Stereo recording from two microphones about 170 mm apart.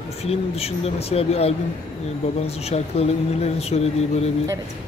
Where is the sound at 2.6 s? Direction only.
35° left (ahead or behind).